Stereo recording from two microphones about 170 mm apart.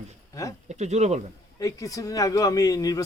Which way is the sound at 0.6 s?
40° right (ahead or behind).